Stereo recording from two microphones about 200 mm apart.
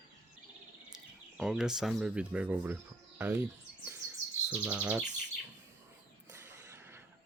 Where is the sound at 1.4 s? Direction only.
5° right (ahead or behind).